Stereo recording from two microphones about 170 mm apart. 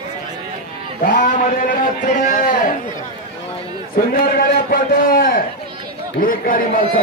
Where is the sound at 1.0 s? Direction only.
50° left (ahead or behind).